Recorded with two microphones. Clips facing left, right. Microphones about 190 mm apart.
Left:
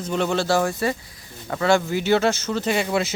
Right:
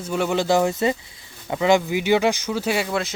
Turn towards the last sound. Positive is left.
turn(degrees=5)  # may be behind; listen again after turning